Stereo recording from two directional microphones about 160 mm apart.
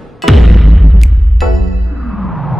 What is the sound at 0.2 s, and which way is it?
Music, centre (ahead or behind).